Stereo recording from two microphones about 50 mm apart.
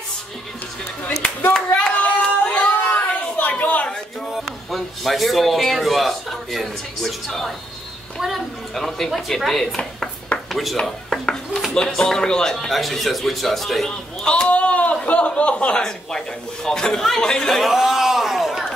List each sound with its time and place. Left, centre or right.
1.8 s hands: left
2.5 s a sound: left
4.3 s a man's voice: centre
8.7 s a man's voice: centre
10.8 s speech: centre
13.8 s a man's voice: centre
14.5 s speech: left
15.8 s a man's voice: centre
17.6 s speech: centre